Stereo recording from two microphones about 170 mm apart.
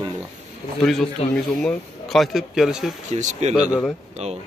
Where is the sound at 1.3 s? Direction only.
5° left (ahead or behind).